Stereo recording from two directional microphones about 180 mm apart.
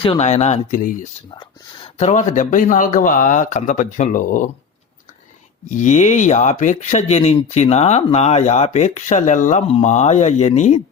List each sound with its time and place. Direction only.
0.0 s speech: 35° left (ahead or behind)
5.6 s speech: 45° left (ahead or behind)